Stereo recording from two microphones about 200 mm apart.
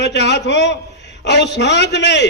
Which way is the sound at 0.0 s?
60° left (ahead or behind).